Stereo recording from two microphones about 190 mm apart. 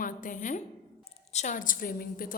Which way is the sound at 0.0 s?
45° left (ahead or behind).